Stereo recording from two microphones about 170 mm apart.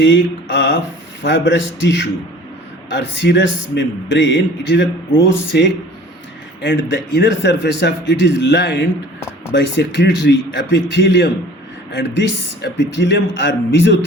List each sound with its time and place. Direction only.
0.0 s a man's voice: 90° left